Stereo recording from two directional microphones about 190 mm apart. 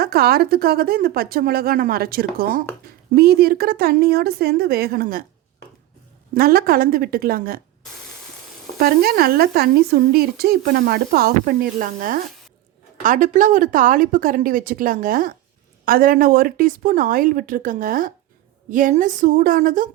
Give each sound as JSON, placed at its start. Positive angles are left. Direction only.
{"t": 0.0, "sound": "a woman's voice", "side_deg": -55}
{"t": 6.3, "sound": "a woman's voice", "side_deg": -50}
{"t": 8.8, "sound": "a woman's voice", "side_deg": -50}